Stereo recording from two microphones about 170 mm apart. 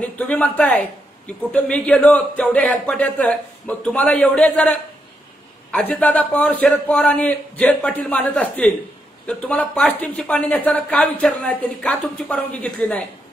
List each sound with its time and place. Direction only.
0.0 s a woman's voice: 10° left (ahead or behind)
5.7 s a woman's voice: 5° left (ahead or behind)